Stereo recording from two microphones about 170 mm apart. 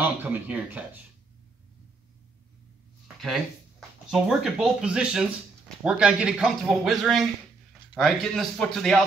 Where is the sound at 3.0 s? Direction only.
Centre (ahead or behind).